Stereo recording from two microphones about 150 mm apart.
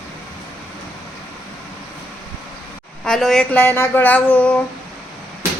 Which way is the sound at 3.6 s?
15° left (ahead or behind).